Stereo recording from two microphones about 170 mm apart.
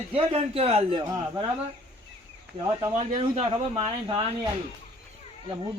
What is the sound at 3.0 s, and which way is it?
Speech, 35° right (ahead or behind).